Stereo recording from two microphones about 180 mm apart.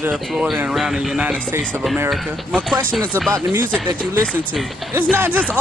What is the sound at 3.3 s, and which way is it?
Speech, 15° right (ahead or behind).